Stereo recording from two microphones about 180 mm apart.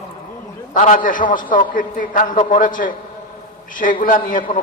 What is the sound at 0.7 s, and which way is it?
A man's voice, 45° left (ahead or behind).